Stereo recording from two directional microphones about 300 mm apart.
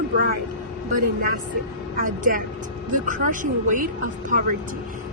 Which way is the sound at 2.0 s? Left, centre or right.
Right.